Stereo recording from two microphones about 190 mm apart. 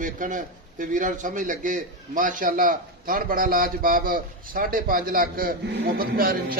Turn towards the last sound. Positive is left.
turn(degrees=-50)  # may be behind; listen again after turning